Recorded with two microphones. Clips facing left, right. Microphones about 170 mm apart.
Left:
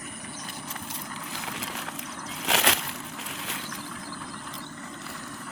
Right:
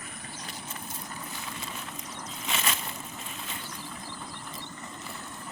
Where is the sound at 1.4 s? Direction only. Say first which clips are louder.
Left 4 dB; 85° left.